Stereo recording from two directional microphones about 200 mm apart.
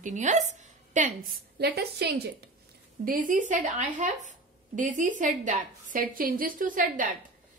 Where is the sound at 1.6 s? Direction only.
50° right (ahead or behind).